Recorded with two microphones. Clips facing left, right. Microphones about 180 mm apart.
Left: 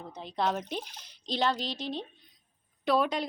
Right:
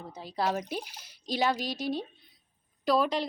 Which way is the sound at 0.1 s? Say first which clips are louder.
Even; 5° right (ahead or behind).